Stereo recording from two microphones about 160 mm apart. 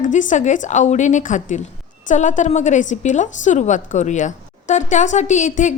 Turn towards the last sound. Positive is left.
turn(degrees=50)  # may be behind; listen again after turning